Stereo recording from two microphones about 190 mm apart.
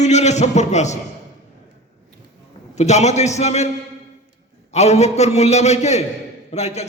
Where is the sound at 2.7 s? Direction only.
35° left (ahead or behind).